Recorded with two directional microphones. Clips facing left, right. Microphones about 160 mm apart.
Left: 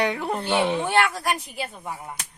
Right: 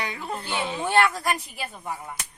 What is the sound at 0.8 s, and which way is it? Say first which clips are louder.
Speech: even; 10° left (ahead or behind).